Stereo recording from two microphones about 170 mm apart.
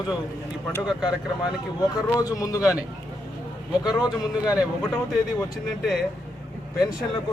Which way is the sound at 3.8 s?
25° left (ahead or behind).